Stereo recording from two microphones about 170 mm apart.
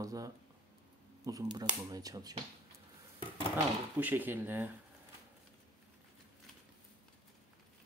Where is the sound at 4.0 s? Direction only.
10° right (ahead or behind).